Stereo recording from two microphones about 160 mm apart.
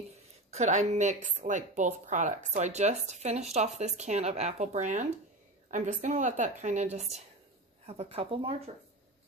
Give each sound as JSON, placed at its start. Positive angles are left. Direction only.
{"t": 0.5, "sound": "a woman's voice", "side_deg": -45}